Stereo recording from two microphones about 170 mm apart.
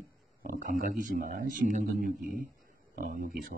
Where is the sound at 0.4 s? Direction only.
50° right (ahead or behind).